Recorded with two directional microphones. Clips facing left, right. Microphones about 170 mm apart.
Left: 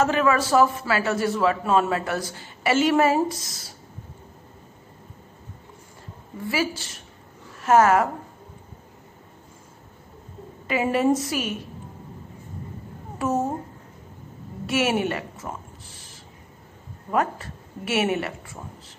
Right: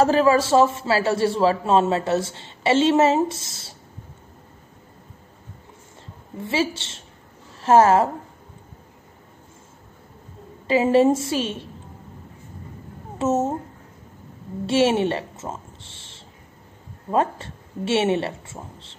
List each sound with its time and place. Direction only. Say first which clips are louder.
0.0 s a man's voice: right 4 dB; 30° right (ahead or behind)
6.4 s a man's voice: right 2 dB; 25° right (ahead or behind)
10.7 s a man's voice: right 5 dB; 30° right (ahead or behind)
13.2 s a man's voice: right 3 dB; 25° right (ahead or behind)
14.7 s a woman's voice: right 4 dB; 30° right (ahead or behind)